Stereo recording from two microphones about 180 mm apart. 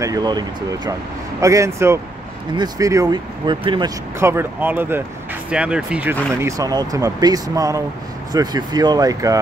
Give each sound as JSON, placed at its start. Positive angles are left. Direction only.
{"t": 0.0, "sound": "speech", "side_deg": -20}
{"t": 4.2, "sound": "speech", "side_deg": -15}
{"t": 6.4, "sound": "speech", "side_deg": -20}